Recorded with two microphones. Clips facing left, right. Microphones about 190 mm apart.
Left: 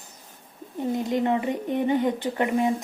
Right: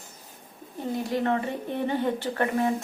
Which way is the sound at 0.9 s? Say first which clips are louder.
Left 1 dB; 20° left (ahead or behind).